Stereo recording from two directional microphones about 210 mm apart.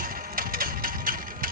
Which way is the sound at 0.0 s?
40° right (ahead or behind).